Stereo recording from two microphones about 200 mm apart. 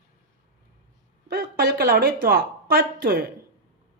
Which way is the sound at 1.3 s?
50° right (ahead or behind).